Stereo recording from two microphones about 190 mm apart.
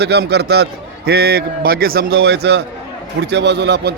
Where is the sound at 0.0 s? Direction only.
60° right (ahead or behind).